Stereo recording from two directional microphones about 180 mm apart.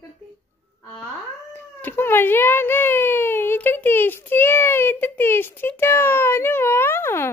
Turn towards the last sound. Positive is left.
turn(degrees=15)  # may be behind; listen again after turning